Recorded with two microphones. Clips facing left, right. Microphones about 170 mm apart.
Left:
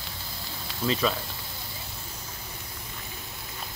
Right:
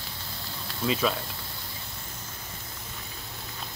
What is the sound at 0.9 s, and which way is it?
Speech, centre (ahead or behind).